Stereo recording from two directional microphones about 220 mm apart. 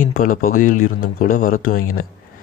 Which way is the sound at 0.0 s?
40° left (ahead or behind).